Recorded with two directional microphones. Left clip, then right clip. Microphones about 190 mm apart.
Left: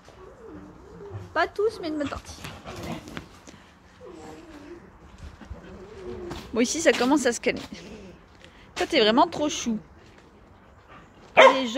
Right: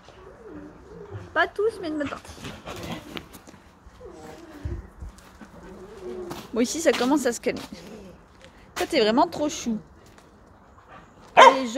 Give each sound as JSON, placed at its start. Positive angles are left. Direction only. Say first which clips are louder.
{"t": 1.3, "sound": "a woman's voice", "louder": "right 1 dB", "side_deg": 5}
{"t": 6.2, "sound": "a woman's voice", "louder": "left 1 dB", "side_deg": 0}
{"t": 11.4, "sound": "dog", "louder": "right 2 dB", "side_deg": -20}